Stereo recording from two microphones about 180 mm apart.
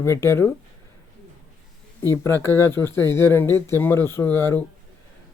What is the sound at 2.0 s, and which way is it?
Speech, 15° left (ahead or behind).